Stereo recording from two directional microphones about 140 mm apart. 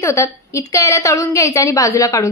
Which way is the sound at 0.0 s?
20° left (ahead or behind).